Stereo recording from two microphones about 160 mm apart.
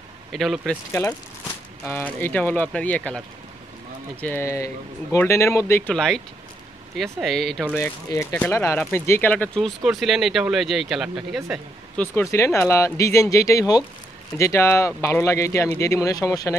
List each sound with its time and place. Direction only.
0.3 s speech: centre (ahead or behind)
1.0 s speech: 20° left (ahead or behind)
4.2 s speech: 15° left (ahead or behind)
8.1 s speech: 15° left (ahead or behind); by 11.4 s 5° right (ahead or behind)
12.0 s speech: 15° left (ahead or behind)